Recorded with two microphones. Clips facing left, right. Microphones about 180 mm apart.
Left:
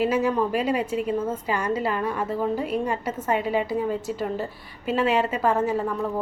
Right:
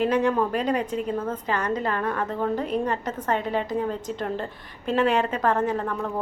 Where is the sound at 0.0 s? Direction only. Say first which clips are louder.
Even; 5° left (ahead or behind).